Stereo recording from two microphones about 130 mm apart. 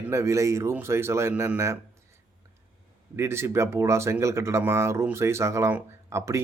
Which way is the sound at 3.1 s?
20° right (ahead or behind).